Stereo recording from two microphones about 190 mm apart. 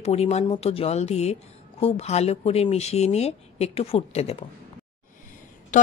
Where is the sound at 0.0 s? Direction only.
35° left (ahead or behind).